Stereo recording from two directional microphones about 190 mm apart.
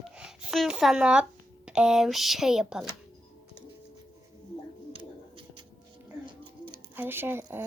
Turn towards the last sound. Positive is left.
turn(degrees=-10)  # may be behind; listen again after turning